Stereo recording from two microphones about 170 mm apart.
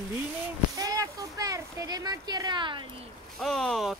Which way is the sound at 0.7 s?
20° right (ahead or behind).